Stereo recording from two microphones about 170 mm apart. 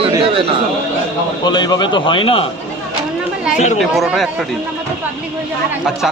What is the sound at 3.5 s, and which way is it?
Speech, 40° left (ahead or behind).